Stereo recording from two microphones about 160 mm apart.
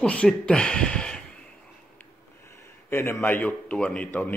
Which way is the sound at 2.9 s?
15° left (ahead or behind).